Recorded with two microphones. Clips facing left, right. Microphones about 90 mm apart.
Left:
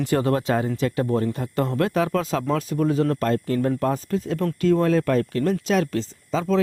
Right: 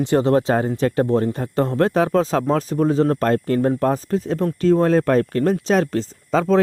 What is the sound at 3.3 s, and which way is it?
Speech, 45° right (ahead or behind).